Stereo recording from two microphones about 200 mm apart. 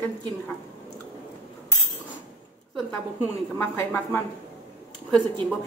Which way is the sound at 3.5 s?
10° left (ahead or behind).